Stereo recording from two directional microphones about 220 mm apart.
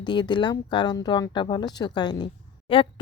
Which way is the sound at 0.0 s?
20° left (ahead or behind).